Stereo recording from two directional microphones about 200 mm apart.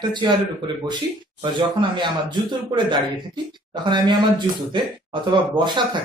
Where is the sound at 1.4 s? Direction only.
25° right (ahead or behind).